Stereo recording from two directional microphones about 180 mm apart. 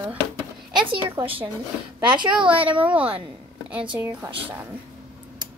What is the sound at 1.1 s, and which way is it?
Speech, 30° right (ahead or behind).